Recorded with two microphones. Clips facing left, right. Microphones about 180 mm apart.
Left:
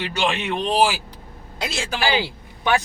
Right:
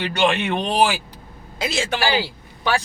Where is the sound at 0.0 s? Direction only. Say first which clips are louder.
Right 4 dB; centre (ahead or behind).